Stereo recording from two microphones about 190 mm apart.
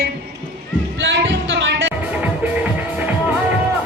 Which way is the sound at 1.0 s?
75° right (ahead or behind).